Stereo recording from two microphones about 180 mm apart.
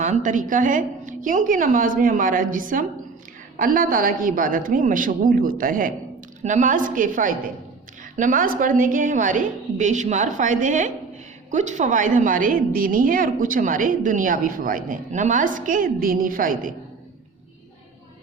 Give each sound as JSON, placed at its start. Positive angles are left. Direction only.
{"t": 0.0, "sound": "a woman's voice", "side_deg": -45}